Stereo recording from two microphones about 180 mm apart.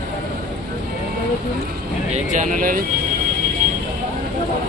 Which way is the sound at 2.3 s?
45° right (ahead or behind).